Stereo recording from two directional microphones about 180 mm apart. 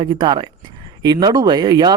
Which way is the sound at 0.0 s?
25° right (ahead or behind).